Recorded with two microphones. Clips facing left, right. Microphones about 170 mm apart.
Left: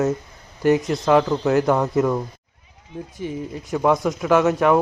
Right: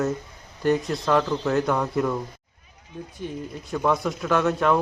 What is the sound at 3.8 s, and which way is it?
Speech, 20° left (ahead or behind).